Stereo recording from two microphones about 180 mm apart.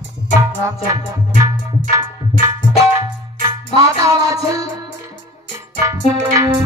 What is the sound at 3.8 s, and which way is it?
Speech, 20° right (ahead or behind).